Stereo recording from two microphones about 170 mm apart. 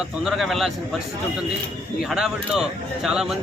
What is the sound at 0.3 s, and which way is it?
Speech, centre (ahead or behind).